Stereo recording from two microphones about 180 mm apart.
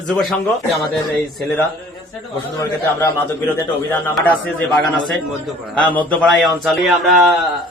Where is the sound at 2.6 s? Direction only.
15° left (ahead or behind).